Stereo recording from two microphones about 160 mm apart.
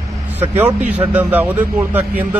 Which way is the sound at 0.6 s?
10° right (ahead or behind).